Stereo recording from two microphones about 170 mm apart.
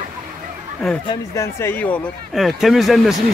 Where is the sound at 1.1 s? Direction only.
15° left (ahead or behind).